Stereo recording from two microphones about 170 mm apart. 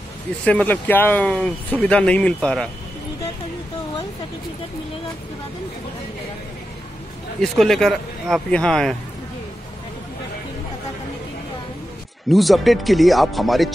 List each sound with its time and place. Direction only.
0.5 s speech: 10° left (ahead or behind)
7.4 s speech: centre (ahead or behind)
12.3 s speech: centre (ahead or behind)